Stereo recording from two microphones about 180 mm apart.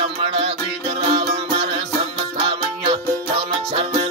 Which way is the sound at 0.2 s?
30° right (ahead or behind).